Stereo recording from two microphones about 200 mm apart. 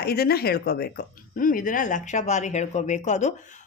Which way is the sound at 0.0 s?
50° left (ahead or behind).